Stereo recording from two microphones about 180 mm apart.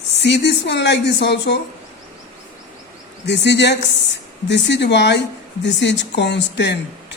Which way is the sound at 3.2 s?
75° left (ahead or behind).